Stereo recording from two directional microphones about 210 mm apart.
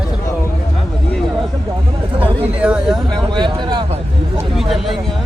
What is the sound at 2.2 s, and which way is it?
Speech, 5° right (ahead or behind).